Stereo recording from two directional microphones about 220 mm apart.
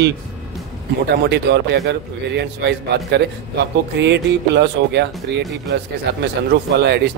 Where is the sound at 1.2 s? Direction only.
50° right (ahead or behind).